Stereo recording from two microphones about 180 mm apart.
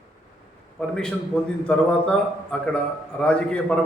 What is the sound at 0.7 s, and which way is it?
A man's voice, 5° left (ahead or behind).